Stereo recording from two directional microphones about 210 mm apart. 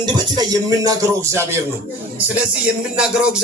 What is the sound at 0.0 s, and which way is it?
Speech, 20° right (ahead or behind).